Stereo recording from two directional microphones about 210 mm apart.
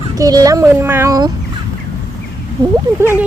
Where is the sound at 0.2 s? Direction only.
15° right (ahead or behind).